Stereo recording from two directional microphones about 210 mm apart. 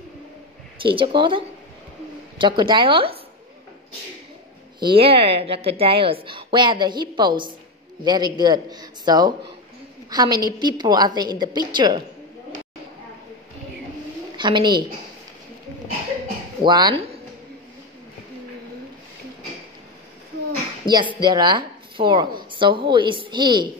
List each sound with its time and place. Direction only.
0.8 s a woman's voice: 25° right (ahead or behind)
4.7 s a woman's voice: 25° right (ahead or behind)
14.3 s a woman's voice: 20° right (ahead or behind)
16.6 s a woman's voice: 20° right (ahead or behind)
20.8 s a woman's voice: 20° right (ahead or behind)